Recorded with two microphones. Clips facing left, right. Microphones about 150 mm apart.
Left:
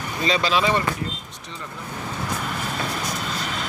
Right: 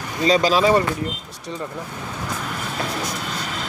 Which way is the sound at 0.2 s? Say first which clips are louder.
Right 5 dB; 40° right (ahead or behind).